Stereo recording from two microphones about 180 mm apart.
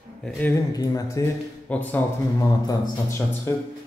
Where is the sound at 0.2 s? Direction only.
10° left (ahead or behind).